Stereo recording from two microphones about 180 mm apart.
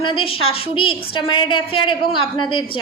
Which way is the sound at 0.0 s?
30° left (ahead or behind).